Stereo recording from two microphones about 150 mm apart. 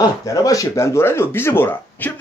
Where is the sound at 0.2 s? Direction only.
20° left (ahead or behind).